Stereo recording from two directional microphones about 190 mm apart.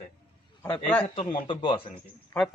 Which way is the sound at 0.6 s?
10° left (ahead or behind).